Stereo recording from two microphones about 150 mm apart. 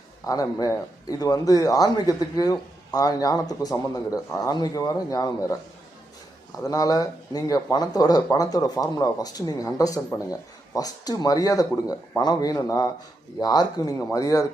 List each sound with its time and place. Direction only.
0.3 s a man's voice: 25° left (ahead or behind)
6.6 s a man's voice: 25° left (ahead or behind)